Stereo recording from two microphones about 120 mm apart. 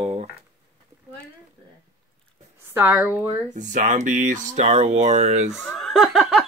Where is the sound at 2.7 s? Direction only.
15° right (ahead or behind).